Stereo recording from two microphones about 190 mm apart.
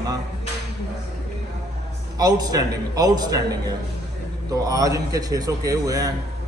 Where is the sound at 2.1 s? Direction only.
20° right (ahead or behind).